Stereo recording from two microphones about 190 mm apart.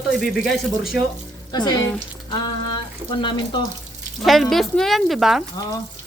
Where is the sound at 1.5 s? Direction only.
20° left (ahead or behind).